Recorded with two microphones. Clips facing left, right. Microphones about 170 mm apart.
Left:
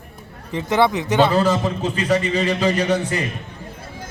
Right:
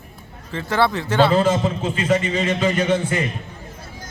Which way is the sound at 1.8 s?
35° left (ahead or behind).